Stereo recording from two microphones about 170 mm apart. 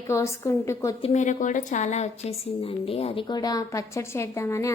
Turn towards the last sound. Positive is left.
turn(degrees=15)  # may be behind; listen again after turning